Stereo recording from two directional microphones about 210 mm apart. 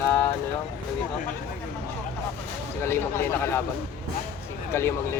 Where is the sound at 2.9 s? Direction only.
10° left (ahead or behind).